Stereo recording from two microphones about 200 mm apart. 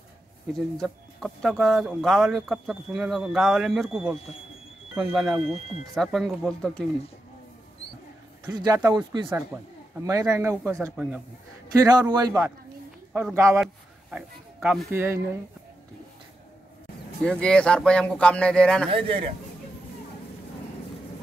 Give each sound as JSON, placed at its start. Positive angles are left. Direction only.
{"t": 0.5, "sound": "speech", "side_deg": 0}
{"t": 8.5, "sound": "a man's voice", "side_deg": -20}
{"t": 14.1, "sound": "speech", "side_deg": -5}
{"t": 17.2, "sound": "speech", "side_deg": 5}
{"t": 18.9, "sound": "a man's voice", "side_deg": -25}